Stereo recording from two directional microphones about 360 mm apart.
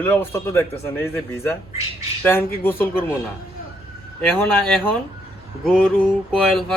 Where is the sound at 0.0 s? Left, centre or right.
Centre.